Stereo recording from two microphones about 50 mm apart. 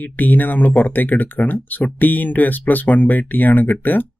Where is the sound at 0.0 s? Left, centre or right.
Left.